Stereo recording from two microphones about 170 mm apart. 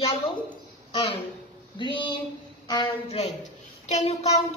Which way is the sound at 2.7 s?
30° left (ahead or behind).